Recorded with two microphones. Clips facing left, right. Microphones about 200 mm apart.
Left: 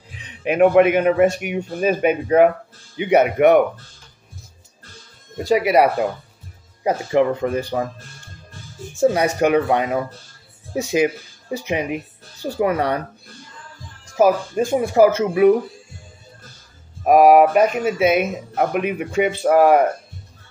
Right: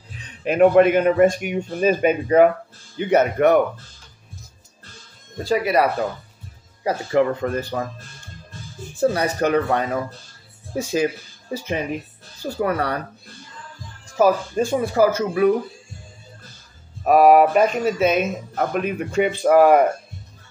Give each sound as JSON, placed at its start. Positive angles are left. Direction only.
{"t": 0.4, "sound": "speech", "side_deg": 10}
{"t": 5.4, "sound": "speech", "side_deg": 20}
{"t": 9.1, "sound": "speech", "side_deg": 15}
{"t": 14.1, "sound": "speech", "side_deg": 10}
{"t": 17.0, "sound": "speech", "side_deg": 10}